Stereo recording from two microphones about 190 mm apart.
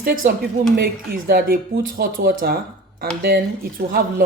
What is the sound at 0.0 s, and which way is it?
Speech, 50° right (ahead or behind).